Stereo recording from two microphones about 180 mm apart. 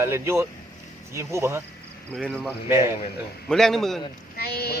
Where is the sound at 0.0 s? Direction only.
15° right (ahead or behind).